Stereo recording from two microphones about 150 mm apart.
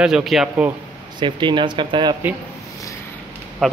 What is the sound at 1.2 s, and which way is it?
Speech, 30° right (ahead or behind).